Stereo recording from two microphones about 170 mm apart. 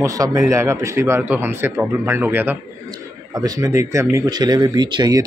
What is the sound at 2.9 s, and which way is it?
Speech, 20° right (ahead or behind).